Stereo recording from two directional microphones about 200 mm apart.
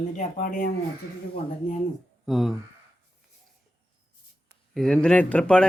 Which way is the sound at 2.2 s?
Centre (ahead or behind).